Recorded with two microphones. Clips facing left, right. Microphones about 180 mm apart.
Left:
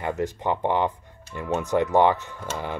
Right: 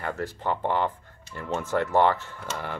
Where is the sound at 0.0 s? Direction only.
15° left (ahead or behind).